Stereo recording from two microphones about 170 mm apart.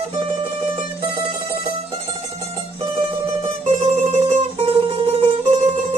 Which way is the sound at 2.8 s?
30° right (ahead or behind).